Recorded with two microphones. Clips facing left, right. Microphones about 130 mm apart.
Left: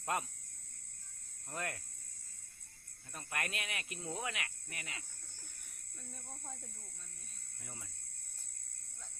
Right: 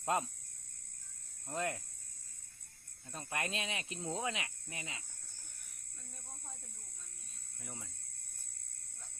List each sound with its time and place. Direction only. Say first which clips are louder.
0.0 s speech: right 3 dB; 20° right (ahead or behind)
1.5 s cricket: right 5 dB; 20° right (ahead or behind)
3.1 s cricket: right 2 dB; 25° right (ahead or behind)
7.6 s cricket: right 3 dB; 20° right (ahead or behind)